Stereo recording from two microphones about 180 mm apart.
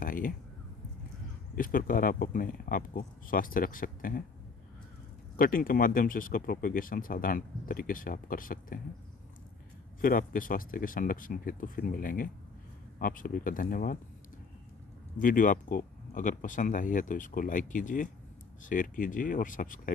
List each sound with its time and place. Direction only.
0.0 s a sound: 50° left (ahead or behind)
1.5 s speech: 50° left (ahead or behind)
5.4 s speech: 50° left (ahead or behind)
10.0 s speech: 50° left (ahead or behind)
15.1 s speech: 50° left (ahead or behind)